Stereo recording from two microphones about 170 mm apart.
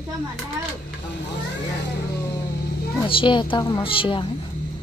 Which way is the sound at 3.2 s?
30° left (ahead or behind).